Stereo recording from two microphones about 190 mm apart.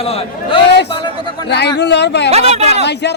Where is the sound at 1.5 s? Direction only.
60° left (ahead or behind).